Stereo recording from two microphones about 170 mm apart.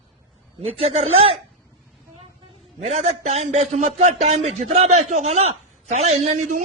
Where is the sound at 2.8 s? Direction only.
40° right (ahead or behind).